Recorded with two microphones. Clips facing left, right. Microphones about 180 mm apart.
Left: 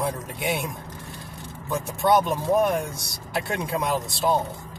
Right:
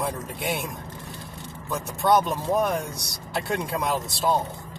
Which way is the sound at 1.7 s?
Centre (ahead or behind).